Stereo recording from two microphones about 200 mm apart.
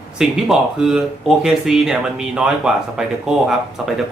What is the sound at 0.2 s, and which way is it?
Speech, centre (ahead or behind).